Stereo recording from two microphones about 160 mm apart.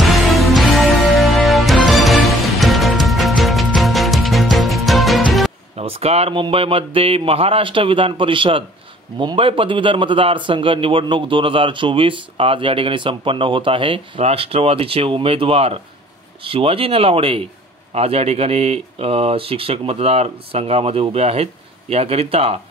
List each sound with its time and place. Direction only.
0.1 s music: centre (ahead or behind)
5.8 s speech: 40° right (ahead or behind)